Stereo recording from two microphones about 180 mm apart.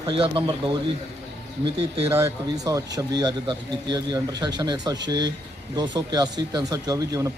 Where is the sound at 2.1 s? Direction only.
15° right (ahead or behind).